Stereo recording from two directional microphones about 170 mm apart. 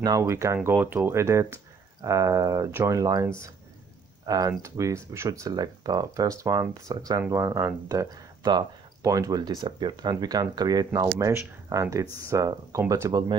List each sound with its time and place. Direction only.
0.0 s speech: 20° right (ahead or behind)
4.3 s speech: 20° right (ahead or behind)